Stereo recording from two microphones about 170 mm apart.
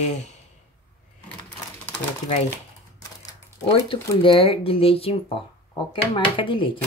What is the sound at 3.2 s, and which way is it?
Speech, 20° left (ahead or behind).